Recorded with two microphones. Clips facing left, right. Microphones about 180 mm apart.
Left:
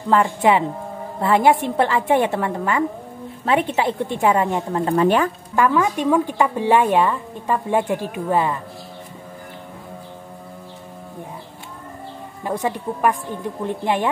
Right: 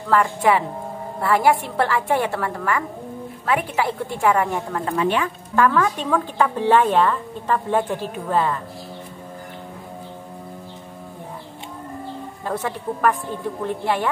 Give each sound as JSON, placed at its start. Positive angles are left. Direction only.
{"t": 0.1, "sound": "a woman's voice", "side_deg": 20}
{"t": 4.9, "sound": "speech", "side_deg": 40}
{"t": 5.6, "sound": "a woman's voice", "side_deg": 15}
{"t": 12.4, "sound": "a woman's voice", "side_deg": 15}